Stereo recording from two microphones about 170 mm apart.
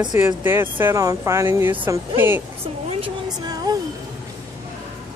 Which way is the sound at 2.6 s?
35° right (ahead or behind).